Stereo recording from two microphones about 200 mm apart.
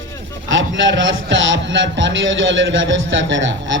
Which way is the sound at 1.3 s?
65° right (ahead or behind).